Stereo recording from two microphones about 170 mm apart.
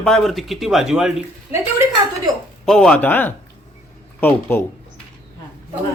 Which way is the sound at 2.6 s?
Centre (ahead or behind).